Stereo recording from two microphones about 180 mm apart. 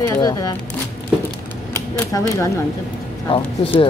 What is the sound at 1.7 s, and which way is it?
Speech, 15° left (ahead or behind).